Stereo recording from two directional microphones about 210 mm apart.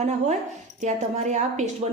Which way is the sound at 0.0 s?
35° right (ahead or behind).